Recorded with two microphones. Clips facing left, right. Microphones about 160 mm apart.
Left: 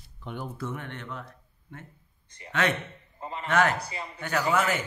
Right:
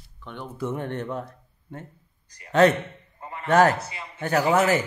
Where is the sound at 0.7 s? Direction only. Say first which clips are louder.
Right 9 dB; 40° right (ahead or behind).